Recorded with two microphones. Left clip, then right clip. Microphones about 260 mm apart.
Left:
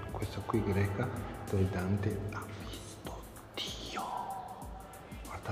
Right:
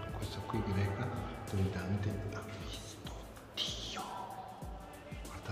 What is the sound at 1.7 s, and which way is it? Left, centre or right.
Speech, centre.